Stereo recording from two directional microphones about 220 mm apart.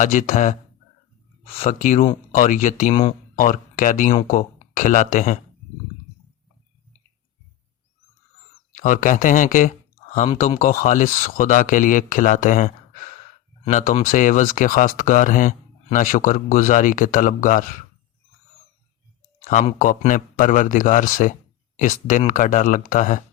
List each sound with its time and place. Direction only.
0.0 s speech: 35° left (ahead or behind)
1.5 s speech: 30° left (ahead or behind)
2.9 s speech: 25° left (ahead or behind)
3.3 s speech: 35° left (ahead or behind)
8.7 s speech: 35° left (ahead or behind)
19.5 s speech: 35° left (ahead or behind)